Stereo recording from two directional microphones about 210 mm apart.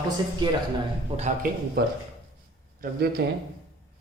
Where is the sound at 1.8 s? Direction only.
50° right (ahead or behind).